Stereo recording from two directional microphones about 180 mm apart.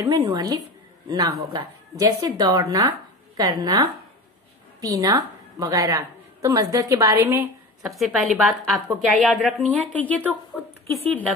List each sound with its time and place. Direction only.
0.1 s a man's voice: 25° right (ahead or behind)
7.8 s a woman's voice: centre (ahead or behind)